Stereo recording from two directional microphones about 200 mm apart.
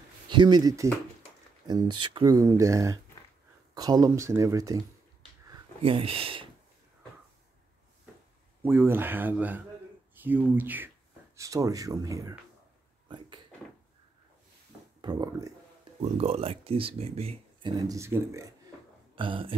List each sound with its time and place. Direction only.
0.3 s speech: 20° right (ahead or behind)
5.8 s speech: 30° right (ahead or behind)
8.6 s speech: 10° right (ahead or behind)
15.0 s a sound: 20° right (ahead or behind)
16.0 s speech: 30° right (ahead or behind); by 18.5 s 15° right (ahead or behind)
19.1 s speech: 25° right (ahead or behind)